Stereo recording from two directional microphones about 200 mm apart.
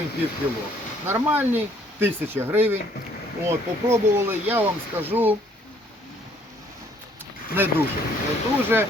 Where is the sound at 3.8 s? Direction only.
10° right (ahead or behind).